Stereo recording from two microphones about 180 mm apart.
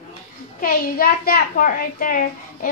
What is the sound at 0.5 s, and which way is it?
A woman's voice, 50° left (ahead or behind).